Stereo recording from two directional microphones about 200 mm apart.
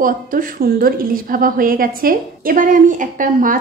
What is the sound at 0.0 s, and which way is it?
A woman's voice, 45° right (ahead or behind).